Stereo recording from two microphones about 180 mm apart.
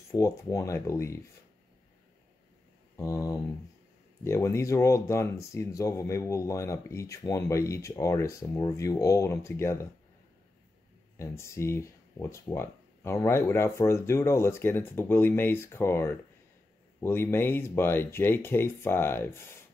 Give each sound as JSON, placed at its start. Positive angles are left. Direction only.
{"t": 0.1, "sound": "speech", "side_deg": 15}
{"t": 3.0, "sound": "speech", "side_deg": 20}
{"t": 11.1, "sound": "speech", "side_deg": 15}